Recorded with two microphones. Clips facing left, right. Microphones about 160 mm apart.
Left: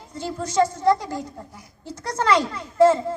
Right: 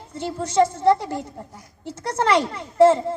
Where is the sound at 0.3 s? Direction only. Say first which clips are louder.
Right 2 dB; 30° right (ahead or behind).